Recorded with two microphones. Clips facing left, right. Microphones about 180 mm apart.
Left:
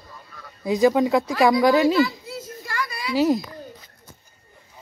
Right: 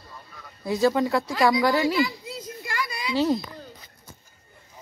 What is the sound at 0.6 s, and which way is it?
Speech, 15° left (ahead or behind).